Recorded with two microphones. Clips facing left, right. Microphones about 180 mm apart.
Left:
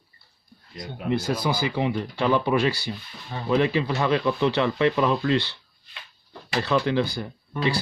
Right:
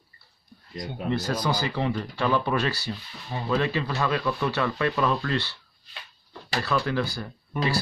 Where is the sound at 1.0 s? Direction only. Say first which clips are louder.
Left 2 dB; 10° left (ahead or behind).